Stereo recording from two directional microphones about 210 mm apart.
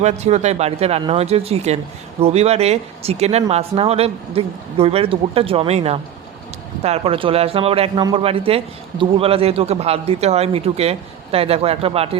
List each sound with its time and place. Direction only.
0.0 s a man's voice: 30° right (ahead or behind)